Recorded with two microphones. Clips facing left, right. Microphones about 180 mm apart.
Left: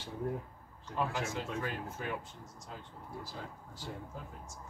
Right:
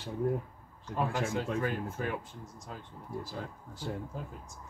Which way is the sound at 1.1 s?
55° right (ahead or behind).